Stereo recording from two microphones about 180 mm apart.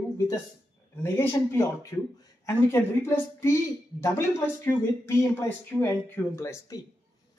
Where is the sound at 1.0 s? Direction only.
15° left (ahead or behind).